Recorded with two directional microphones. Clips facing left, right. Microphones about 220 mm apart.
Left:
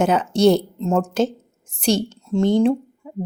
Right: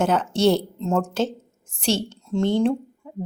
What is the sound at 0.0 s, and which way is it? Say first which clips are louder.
A woman's voice: left 3 dB; 15° left (ahead or behind).